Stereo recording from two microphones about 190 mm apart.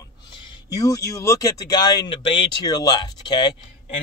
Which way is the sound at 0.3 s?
25° left (ahead or behind).